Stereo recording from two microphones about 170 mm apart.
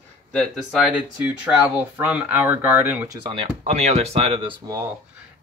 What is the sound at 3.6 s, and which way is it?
Speech, 40° right (ahead or behind).